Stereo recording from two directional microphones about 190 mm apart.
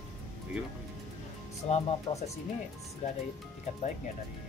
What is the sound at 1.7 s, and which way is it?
Speech, 35° left (ahead or behind).